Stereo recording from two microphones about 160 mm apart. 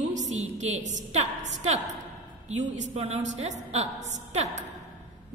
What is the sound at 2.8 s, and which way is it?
A woman's voice, 45° right (ahead or behind).